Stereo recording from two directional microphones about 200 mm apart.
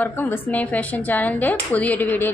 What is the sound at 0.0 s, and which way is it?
A woman's voice, 10° left (ahead or behind).